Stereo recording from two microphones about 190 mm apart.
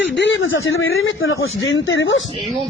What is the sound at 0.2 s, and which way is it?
A man's voice, 80° left.